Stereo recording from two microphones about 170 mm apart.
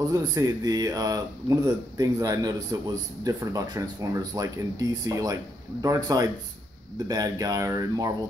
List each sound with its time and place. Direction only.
0.1 s a man's voice: 20° right (ahead or behind)